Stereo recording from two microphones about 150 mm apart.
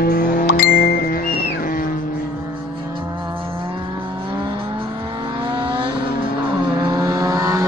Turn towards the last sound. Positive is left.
turn(degrees=-25)  # may be behind; listen again after turning